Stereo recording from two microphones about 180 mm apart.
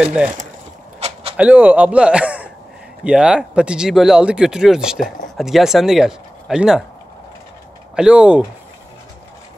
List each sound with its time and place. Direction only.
0.0 s speech: 5° right (ahead or behind)
0.9 s a sound: 35° right (ahead or behind)
1.3 s speech: 10° right (ahead or behind)
7.9 s speech: 5° right (ahead or behind)